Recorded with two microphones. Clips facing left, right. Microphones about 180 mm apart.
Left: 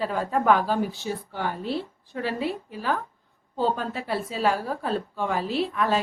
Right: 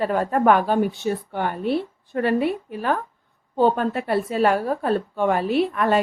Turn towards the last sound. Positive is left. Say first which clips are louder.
# right 5 dB
turn(degrees=-55)  # may be behind; listen again after turning